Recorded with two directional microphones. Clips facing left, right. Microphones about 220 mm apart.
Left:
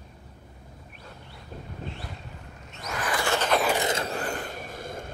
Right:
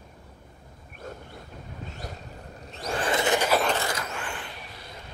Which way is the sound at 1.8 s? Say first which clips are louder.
Even; 40° right (ahead or behind).